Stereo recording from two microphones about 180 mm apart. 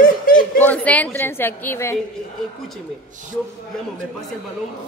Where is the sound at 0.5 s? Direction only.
10° left (ahead or behind).